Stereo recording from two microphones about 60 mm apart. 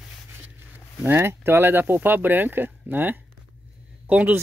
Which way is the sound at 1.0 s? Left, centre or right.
Right.